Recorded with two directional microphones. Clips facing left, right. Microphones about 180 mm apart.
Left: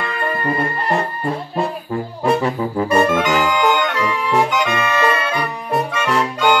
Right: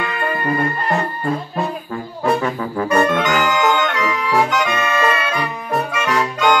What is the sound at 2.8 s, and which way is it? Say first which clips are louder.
Brass instrument: even; 15° left (ahead or behind).